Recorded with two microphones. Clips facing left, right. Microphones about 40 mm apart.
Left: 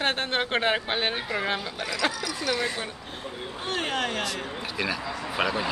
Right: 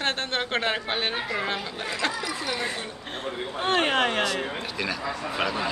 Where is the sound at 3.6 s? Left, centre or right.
Right.